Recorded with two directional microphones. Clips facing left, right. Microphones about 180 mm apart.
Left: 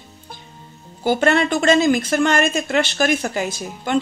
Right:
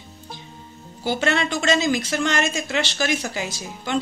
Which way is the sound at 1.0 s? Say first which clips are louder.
Left 5 dB; 50° left (ahead or behind).